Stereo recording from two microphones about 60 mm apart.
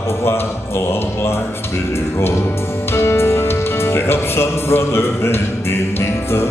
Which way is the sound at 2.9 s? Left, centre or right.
Left.